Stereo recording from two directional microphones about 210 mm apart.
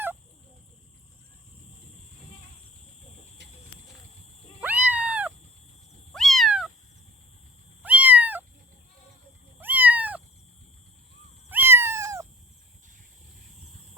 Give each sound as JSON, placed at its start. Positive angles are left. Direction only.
{"t": 4.6, "sound": "cat", "side_deg": -5}
{"t": 7.8, "sound": "cat", "side_deg": -5}
{"t": 9.6, "sound": "cat", "side_deg": -10}
{"t": 11.4, "sound": "cat", "side_deg": -10}